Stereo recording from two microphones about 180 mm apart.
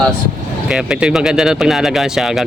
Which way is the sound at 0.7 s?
5° right (ahead or behind).